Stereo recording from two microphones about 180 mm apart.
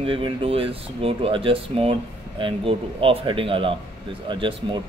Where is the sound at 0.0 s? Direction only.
30° right (ahead or behind).